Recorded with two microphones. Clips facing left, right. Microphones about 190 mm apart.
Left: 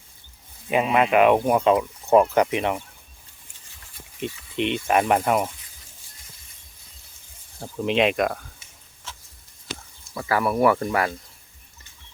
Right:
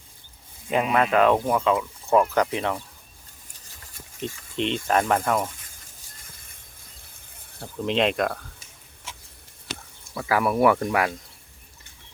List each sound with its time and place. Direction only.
0.9 s speech: 15° left (ahead or behind)
3.8 s stir: 45° right (ahead or behind)
4.5 s speech: 10° left (ahead or behind)
7.6 s speech: 10° left (ahead or behind)
9.1 s a sound: 10° right (ahead or behind)
10.2 s speech: 5° right (ahead or behind)